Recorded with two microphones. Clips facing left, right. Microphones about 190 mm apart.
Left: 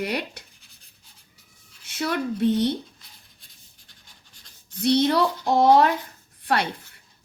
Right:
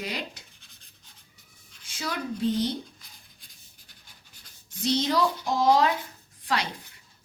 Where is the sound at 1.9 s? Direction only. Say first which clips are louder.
Left 6 dB; 60° left (ahead or behind).